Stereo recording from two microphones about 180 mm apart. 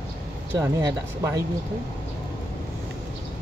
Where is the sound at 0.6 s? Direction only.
20° right (ahead or behind).